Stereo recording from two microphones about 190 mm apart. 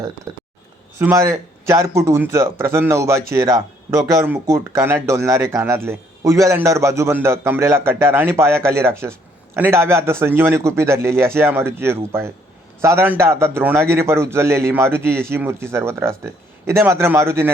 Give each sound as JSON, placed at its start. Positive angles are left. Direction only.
{"t": 0.9, "sound": "a man's voice", "side_deg": -15}